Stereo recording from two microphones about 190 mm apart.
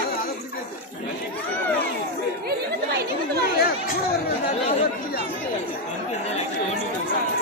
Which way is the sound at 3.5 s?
55° left (ahead or behind).